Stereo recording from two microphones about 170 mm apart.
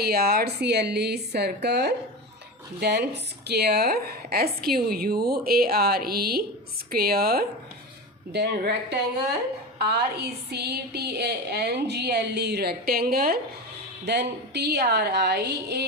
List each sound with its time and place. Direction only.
0.0 s a woman's voice: 65° right (ahead or behind)
3.1 s a woman's voice: 75° right (ahead or behind)
8.3 s a woman's voice: 80° right; by 13.4 s 60° right (ahead or behind)
14.0 s a woman's voice: 80° right